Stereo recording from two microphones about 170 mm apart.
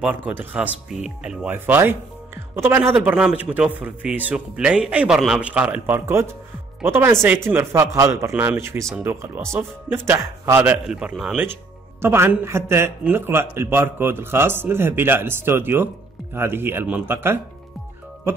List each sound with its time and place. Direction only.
0.0 s speech: 10° right (ahead or behind)